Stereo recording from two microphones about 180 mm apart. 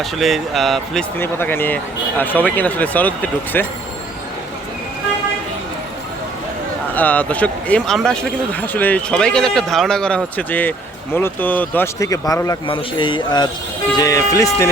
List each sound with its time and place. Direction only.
0.0 s speech: centre (ahead or behind)
1.2 s speech: 10° left (ahead or behind)
6.9 s a man's voice: 10° left (ahead or behind)